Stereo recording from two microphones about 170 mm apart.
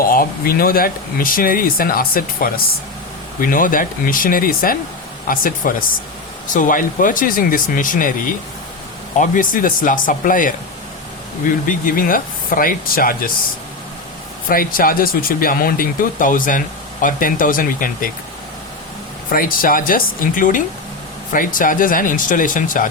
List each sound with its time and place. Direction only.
0.1 s speech: 60° left (ahead or behind)
11.6 s speech: 55° left (ahead or behind)
14.5 s speech: 55° left (ahead or behind)
19.3 s speech: 55° left (ahead or behind)